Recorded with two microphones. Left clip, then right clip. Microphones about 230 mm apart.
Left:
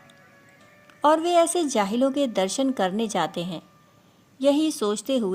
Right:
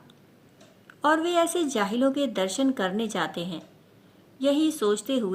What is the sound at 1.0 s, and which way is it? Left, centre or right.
A woman's voice, left.